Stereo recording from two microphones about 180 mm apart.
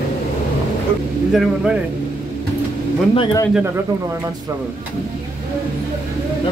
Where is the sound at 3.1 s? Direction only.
25° left (ahead or behind).